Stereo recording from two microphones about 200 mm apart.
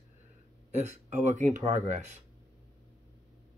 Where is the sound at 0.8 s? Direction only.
35° right (ahead or behind).